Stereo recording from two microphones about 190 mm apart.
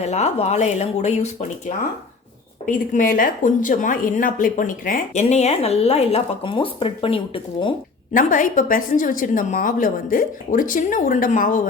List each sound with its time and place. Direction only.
0.0 s a woman's voice: 35° left (ahead or behind)
8.1 s a woman's voice: 45° left (ahead or behind)